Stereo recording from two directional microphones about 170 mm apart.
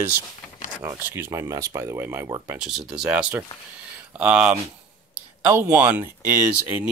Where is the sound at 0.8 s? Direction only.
15° right (ahead or behind).